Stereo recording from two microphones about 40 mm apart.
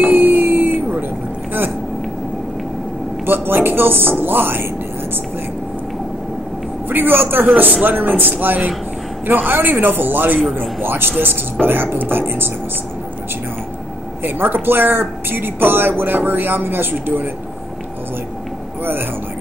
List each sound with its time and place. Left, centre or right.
0.0 s a sound: right
3.3 s speech: right
6.9 s a man's voice: right
14.2 s speech: right